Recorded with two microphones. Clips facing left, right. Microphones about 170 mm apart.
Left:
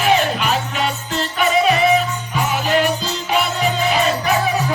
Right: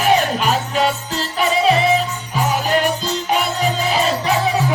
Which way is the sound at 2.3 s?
45° right (ahead or behind).